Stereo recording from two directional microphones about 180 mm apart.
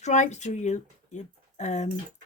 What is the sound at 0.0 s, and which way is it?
Speech, 40° left (ahead or behind).